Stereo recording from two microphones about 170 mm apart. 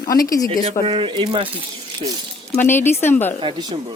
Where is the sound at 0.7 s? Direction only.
35° right (ahead or behind).